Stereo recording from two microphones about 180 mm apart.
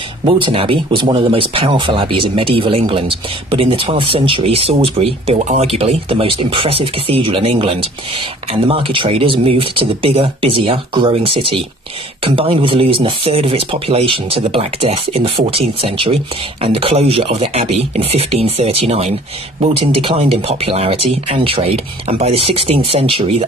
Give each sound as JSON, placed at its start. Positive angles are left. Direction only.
{"t": 0.2, "sound": "speech", "side_deg": -30}